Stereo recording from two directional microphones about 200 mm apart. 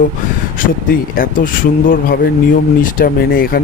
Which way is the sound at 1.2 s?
45° left (ahead or behind).